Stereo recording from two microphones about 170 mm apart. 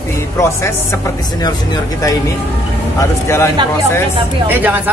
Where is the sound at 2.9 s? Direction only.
15° left (ahead or behind).